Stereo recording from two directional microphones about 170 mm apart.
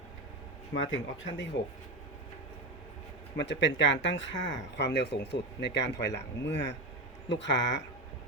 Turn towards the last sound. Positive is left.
turn(degrees=90)